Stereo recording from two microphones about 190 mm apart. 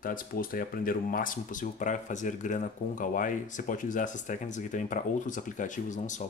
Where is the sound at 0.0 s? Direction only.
45° left (ahead or behind).